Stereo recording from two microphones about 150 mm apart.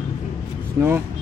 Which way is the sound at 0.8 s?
15° right (ahead or behind).